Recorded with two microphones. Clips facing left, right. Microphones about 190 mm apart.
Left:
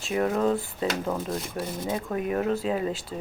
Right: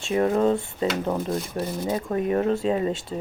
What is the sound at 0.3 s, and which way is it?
Speech, 25° right (ahead or behind).